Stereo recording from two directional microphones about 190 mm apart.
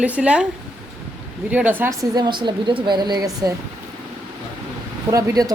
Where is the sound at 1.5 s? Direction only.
10° right (ahead or behind).